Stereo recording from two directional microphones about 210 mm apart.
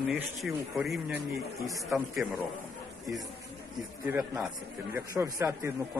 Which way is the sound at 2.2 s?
5° right (ahead or behind).